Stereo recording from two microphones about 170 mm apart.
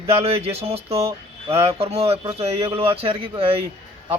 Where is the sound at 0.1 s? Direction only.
35° right (ahead or behind).